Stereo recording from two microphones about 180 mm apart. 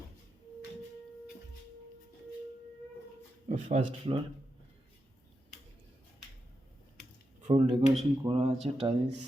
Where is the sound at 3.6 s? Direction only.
25° right (ahead or behind).